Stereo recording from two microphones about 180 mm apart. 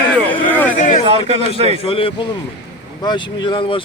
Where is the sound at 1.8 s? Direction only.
30° left (ahead or behind).